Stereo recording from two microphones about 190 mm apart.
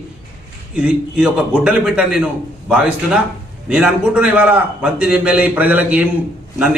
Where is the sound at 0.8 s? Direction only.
5° right (ahead or behind).